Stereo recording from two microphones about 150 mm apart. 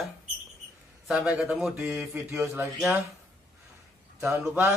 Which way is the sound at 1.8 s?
15° right (ahead or behind).